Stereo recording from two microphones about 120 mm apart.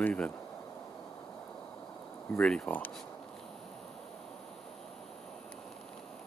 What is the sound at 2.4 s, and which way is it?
Speech, 5° left (ahead or behind).